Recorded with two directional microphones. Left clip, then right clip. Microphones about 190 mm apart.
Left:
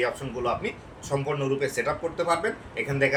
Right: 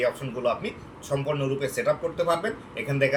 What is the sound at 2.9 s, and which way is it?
Speech, 5° left (ahead or behind).